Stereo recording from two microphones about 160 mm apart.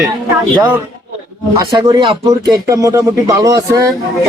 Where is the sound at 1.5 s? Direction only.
25° right (ahead or behind).